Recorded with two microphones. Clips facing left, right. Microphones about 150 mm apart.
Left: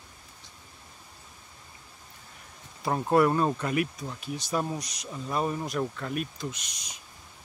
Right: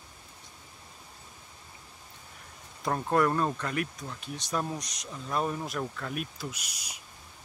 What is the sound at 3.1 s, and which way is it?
Speech, 10° left (ahead or behind).